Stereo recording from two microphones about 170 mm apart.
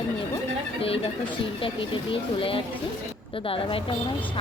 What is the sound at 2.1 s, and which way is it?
Speech, 30° left (ahead or behind).